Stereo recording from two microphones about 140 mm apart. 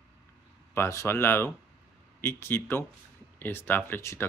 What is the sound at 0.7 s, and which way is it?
Speech, 20° left (ahead or behind).